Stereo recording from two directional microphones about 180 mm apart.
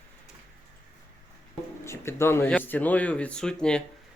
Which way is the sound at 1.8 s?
15° left (ahead or behind).